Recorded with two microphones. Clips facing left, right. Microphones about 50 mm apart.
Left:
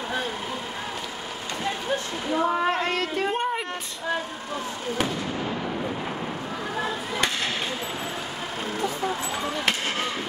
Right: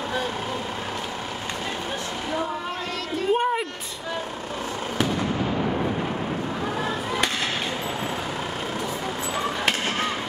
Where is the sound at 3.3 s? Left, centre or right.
Centre.